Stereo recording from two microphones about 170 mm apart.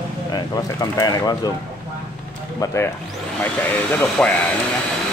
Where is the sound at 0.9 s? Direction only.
20° left (ahead or behind).